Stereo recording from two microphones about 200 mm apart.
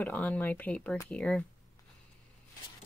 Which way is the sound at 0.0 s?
10° left (ahead or behind).